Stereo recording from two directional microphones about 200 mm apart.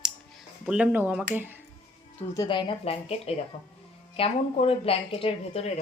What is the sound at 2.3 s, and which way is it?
Speech, 20° left (ahead or behind).